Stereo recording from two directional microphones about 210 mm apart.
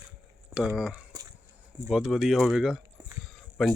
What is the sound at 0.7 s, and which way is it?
Speech, 5° right (ahead or behind).